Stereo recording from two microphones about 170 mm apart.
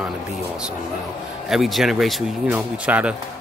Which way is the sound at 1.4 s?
Centre (ahead or behind).